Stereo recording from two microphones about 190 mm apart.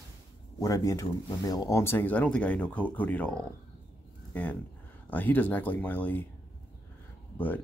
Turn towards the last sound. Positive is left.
turn(degrees=10)  # may be behind; listen again after turning